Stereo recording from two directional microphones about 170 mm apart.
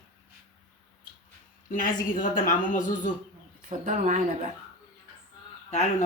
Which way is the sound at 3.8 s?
45° right (ahead or behind).